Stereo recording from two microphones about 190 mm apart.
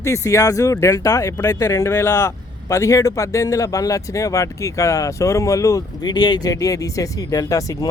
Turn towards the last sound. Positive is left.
turn(degrees=20)  # may be behind; listen again after turning